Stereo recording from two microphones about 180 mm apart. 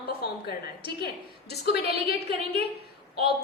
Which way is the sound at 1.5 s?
65° left (ahead or behind).